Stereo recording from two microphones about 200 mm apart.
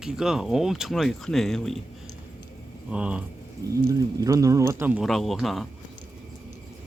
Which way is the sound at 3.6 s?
15° right (ahead or behind).